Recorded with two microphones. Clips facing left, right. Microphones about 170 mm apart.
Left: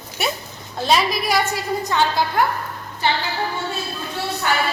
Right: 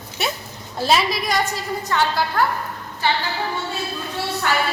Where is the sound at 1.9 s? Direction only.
15° left (ahead or behind).